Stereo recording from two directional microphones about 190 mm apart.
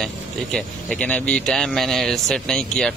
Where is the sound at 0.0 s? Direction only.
Centre (ahead or behind).